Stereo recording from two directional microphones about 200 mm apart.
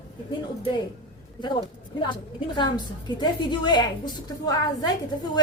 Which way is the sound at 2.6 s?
20° left (ahead or behind).